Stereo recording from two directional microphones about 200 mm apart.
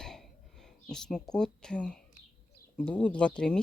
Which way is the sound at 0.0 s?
5° left (ahead or behind).